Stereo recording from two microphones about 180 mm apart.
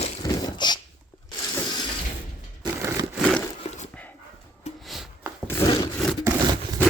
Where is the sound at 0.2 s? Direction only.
20° left (ahead or behind).